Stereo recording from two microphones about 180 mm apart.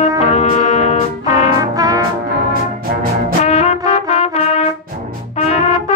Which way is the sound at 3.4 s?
35° left (ahead or behind).